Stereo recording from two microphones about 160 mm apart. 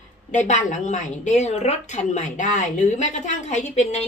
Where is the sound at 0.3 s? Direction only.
50° left (ahead or behind).